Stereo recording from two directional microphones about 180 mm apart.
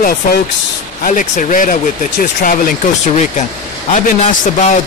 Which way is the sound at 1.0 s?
45° left (ahead or behind).